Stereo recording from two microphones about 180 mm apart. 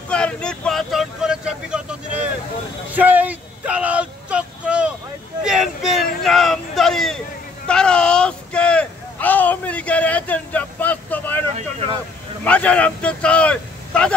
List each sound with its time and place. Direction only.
0.1 s vehicle: 5° left (ahead or behind)
2.9 s a sound: 10° right (ahead or behind); by 11.4 s 10° left (ahead or behind)
11.5 s vehicle: 35° right (ahead or behind)
12.4 s vehicle: 5° left (ahead or behind)